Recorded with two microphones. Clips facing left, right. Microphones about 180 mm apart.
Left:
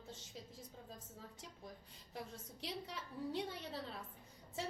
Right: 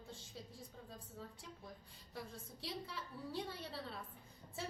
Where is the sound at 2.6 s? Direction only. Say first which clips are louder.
Even; 20° left (ahead or behind).